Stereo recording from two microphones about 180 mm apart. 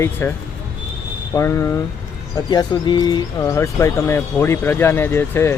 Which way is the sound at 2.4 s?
25° left (ahead or behind).